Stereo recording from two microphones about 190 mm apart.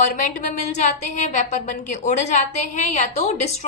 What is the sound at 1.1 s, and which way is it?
A woman's voice, 40° left (ahead or behind).